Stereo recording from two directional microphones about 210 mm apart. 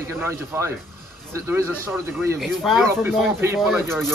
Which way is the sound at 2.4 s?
Centre (ahead or behind).